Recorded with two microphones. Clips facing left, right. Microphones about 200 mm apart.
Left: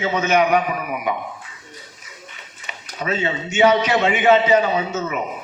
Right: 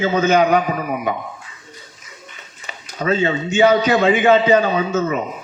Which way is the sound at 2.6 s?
30° right (ahead or behind).